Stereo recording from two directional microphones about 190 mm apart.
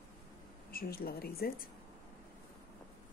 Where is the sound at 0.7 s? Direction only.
50° left (ahead or behind).